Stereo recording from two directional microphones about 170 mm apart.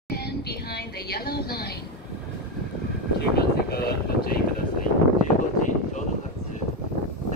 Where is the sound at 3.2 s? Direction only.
65° left (ahead or behind).